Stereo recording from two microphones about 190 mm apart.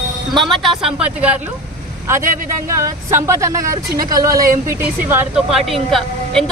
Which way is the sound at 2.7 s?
15° right (ahead or behind).